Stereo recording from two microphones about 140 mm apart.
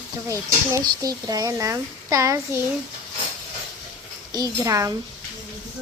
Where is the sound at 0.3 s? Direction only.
25° right (ahead or behind).